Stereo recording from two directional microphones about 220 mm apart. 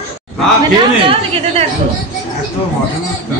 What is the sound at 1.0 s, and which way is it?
Speech, 25° right (ahead or behind).